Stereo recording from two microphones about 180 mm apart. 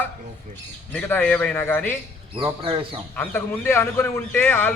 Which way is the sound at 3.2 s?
15° left (ahead or behind).